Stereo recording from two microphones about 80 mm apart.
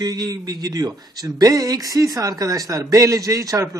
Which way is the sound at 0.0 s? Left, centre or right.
Right.